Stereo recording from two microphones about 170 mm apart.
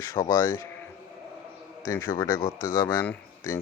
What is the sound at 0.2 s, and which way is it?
Speech, 30° left (ahead or behind).